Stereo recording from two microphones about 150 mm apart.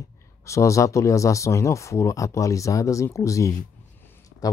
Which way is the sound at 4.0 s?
20° left (ahead or behind).